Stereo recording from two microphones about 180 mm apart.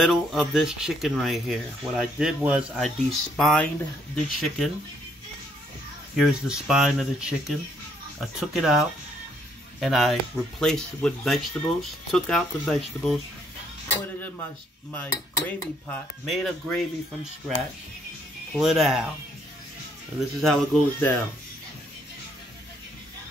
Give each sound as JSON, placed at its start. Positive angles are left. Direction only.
{"t": 0.0, "sound": "speech", "side_deg": 0}
{"t": 6.1, "sound": "speech", "side_deg": -5}
{"t": 14.9, "sound": "cutlery", "side_deg": 10}
{"t": 18.5, "sound": "speech", "side_deg": 0}
{"t": 20.3, "sound": "speech", "side_deg": 0}